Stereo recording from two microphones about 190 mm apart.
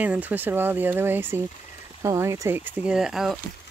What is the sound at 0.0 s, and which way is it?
Speech, 10° right (ahead or behind).